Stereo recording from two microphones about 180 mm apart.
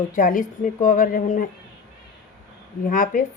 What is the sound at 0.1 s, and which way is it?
A woman's voice, 50° left (ahead or behind).